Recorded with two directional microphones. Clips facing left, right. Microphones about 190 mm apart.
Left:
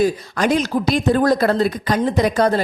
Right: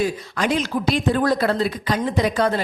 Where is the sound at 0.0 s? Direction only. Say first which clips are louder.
Left 4 dB; 45° left (ahead or behind).